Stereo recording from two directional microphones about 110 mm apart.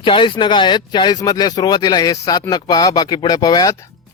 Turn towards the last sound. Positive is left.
turn(degrees=35)  # may be behind; listen again after turning